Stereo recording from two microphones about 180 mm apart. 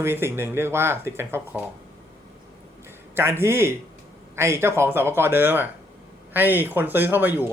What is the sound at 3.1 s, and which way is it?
Speech, 15° right (ahead or behind).